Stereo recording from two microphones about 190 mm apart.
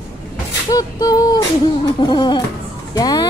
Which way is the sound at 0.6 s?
20° left (ahead or behind).